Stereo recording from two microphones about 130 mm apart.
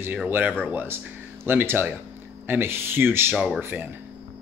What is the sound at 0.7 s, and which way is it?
Speech, 15° right (ahead or behind).